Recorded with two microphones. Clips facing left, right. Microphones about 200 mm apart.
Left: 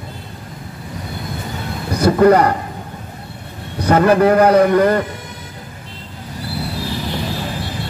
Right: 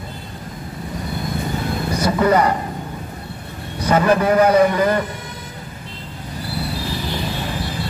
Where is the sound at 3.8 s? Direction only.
60° left (ahead or behind).